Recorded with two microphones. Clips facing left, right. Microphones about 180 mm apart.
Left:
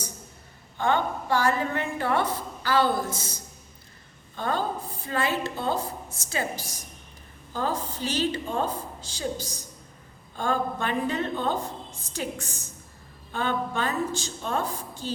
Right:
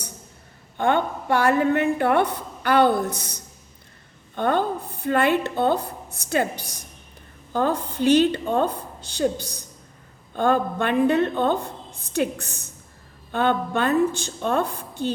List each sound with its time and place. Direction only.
0.8 s a woman's voice: 55° right (ahead or behind)